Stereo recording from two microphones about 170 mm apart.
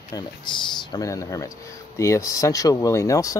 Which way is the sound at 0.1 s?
25° left (ahead or behind).